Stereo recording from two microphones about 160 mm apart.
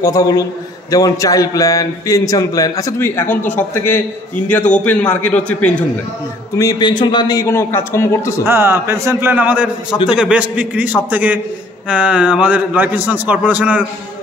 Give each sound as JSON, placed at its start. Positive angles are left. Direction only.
{"t": 0.0, "sound": "a man's voice", "side_deg": 20}
{"t": 6.5, "sound": "a man's voice", "side_deg": 20}
{"t": 8.5, "sound": "a man's voice", "side_deg": -15}